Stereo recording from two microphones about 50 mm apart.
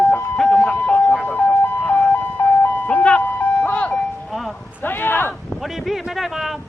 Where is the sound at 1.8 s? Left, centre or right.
Left.